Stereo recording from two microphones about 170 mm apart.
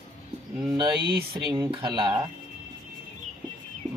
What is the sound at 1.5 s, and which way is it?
Speech, 25° right (ahead or behind).